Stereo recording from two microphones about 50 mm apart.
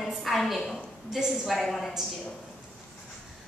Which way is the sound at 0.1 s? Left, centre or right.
Centre.